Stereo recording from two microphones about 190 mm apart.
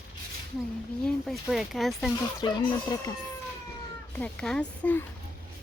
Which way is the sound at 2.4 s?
20° left (ahead or behind).